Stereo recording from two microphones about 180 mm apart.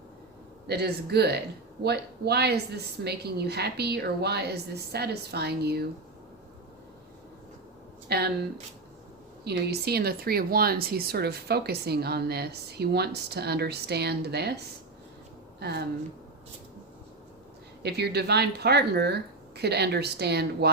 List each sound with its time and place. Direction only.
0.7 s speech: 65° right (ahead or behind)
8.1 s speech: 65° right (ahead or behind)
15.6 s speech: 65° right (ahead or behind)
17.8 s speech: 65° right (ahead or behind)